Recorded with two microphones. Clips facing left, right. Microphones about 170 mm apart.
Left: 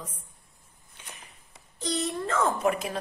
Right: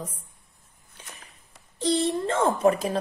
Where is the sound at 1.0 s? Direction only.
35° right (ahead or behind).